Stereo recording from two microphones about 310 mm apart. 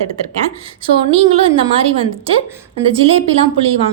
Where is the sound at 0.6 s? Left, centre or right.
Centre.